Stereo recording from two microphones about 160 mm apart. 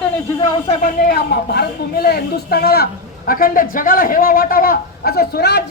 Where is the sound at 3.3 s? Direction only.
65° left (ahead or behind).